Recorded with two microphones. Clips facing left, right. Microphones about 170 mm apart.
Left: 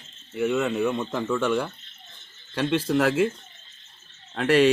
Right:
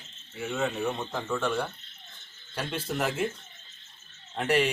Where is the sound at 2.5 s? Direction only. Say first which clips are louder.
Left 10 dB; 90° left.